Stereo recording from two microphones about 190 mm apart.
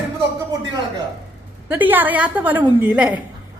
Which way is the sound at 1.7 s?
10° right (ahead or behind).